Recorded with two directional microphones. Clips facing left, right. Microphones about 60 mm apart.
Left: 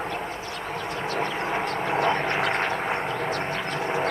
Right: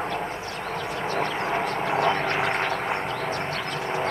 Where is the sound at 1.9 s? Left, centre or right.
Left.